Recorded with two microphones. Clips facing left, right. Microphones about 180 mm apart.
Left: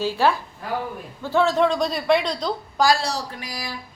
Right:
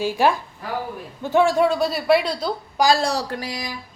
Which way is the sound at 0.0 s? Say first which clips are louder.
Right 1 dB; 15° right (ahead or behind).